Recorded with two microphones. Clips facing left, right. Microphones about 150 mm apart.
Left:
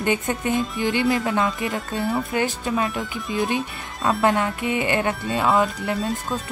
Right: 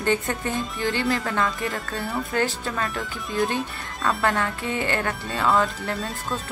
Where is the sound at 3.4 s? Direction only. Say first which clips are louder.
Left 2 dB; 20° left (ahead or behind).